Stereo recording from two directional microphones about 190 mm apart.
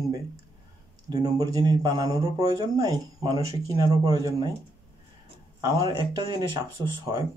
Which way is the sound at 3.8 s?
20° right (ahead or behind).